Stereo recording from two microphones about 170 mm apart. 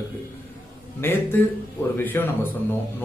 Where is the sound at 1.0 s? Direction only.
10° left (ahead or behind).